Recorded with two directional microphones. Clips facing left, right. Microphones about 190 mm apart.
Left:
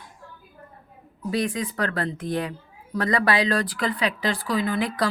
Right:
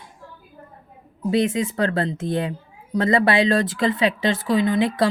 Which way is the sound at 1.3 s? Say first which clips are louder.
Right 5 dB; 25° right (ahead or behind).